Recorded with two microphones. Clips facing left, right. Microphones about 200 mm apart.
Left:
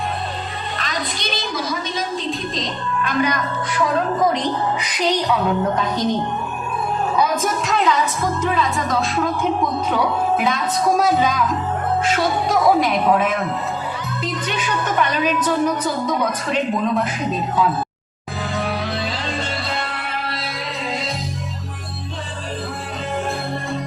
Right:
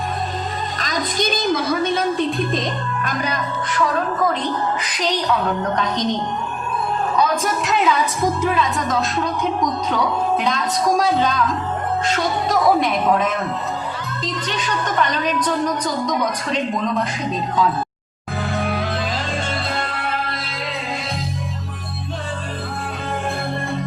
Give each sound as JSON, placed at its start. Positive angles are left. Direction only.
{"t": 0.8, "sound": "a sound", "side_deg": -45}
{"t": 3.8, "sound": "a woman's voice", "side_deg": 15}
{"t": 18.5, "sound": "music", "side_deg": -55}